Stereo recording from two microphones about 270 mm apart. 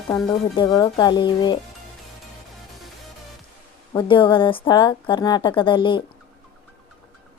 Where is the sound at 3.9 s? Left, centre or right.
Centre.